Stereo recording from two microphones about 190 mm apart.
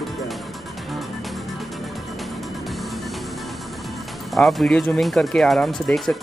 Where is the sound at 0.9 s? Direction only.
Centre (ahead or behind).